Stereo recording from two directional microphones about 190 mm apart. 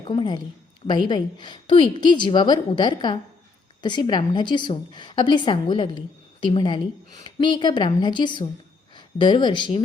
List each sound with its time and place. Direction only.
0.1 s a woman's voice: 25° left (ahead or behind)